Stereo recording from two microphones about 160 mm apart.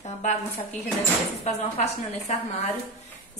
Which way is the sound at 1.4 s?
45° left (ahead or behind).